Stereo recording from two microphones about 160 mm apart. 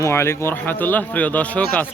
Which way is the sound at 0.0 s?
15° left (ahead or behind).